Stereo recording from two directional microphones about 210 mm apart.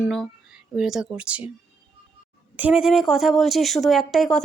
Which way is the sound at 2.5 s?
5° right (ahead or behind).